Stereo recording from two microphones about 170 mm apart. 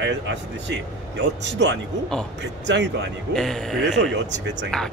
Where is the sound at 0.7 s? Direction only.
90° right.